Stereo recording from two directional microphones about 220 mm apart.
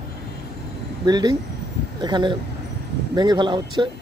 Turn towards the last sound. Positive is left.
turn(degrees=-20)  # may be behind; listen again after turning